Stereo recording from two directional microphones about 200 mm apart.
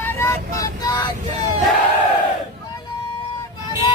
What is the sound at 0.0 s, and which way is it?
Vehicle, 10° left (ahead or behind).